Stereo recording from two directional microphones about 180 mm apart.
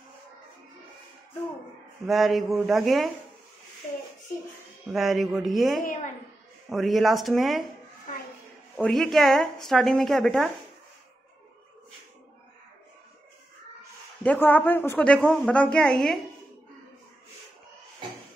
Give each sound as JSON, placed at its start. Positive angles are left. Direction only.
{"t": 2.0, "sound": "a woman's voice", "side_deg": 0}
{"t": 4.9, "sound": "a woman's voice", "side_deg": 0}
{"t": 5.9, "sound": "a sound", "side_deg": 45}
{"t": 6.7, "sound": "a woman's voice", "side_deg": 0}
{"t": 8.7, "sound": "a woman's voice", "side_deg": 0}
{"t": 14.2, "sound": "a woman's voice", "side_deg": 10}